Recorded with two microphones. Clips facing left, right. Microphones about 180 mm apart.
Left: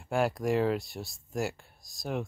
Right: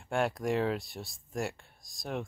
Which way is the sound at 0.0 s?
Centre (ahead or behind).